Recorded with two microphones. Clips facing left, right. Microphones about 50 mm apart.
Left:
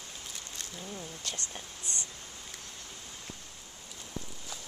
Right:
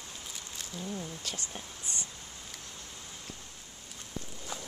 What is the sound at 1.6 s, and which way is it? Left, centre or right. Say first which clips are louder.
Speech: right 1 dB; centre.